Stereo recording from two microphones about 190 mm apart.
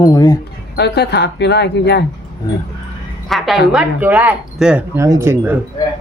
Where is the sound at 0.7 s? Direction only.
60° left (ahead or behind).